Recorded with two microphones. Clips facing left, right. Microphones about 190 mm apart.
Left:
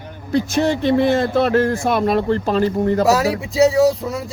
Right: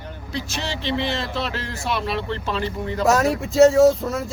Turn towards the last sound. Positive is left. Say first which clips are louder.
# even
turn(degrees=0)  # may be behind; listen again after turning